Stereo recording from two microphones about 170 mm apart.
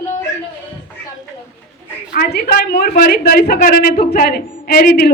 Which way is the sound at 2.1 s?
70° left (ahead or behind).